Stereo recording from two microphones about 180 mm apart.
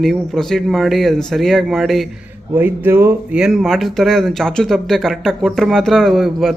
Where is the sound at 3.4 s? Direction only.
Centre (ahead or behind).